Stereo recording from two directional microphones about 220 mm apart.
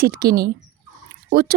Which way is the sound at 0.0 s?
45° right (ahead or behind).